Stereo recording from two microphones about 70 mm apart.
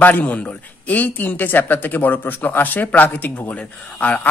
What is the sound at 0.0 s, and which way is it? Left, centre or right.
A man's voice, left.